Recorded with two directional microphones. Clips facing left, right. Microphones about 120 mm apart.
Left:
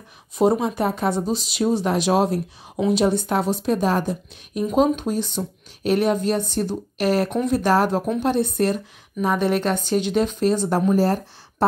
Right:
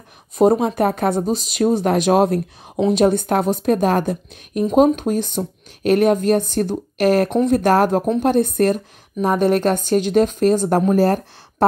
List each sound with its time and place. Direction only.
0.4 s a woman's voice: 50° right (ahead or behind)